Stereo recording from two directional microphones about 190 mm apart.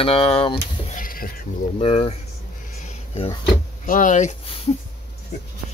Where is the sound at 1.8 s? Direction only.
30° left (ahead or behind).